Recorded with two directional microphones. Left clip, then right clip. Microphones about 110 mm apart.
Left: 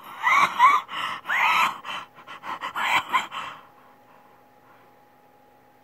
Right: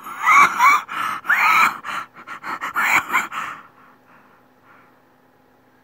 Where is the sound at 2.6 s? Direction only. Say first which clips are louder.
Right 6 dB; centre (ahead or behind).